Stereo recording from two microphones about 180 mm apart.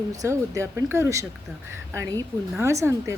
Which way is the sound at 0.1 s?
20° right (ahead or behind).